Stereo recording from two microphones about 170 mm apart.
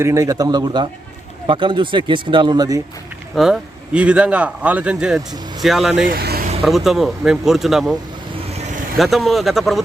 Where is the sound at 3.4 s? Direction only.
5° right (ahead or behind).